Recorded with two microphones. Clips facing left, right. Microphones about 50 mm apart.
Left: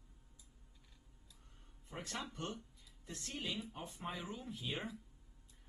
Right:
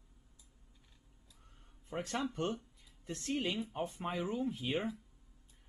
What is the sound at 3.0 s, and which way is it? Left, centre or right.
Speech, right.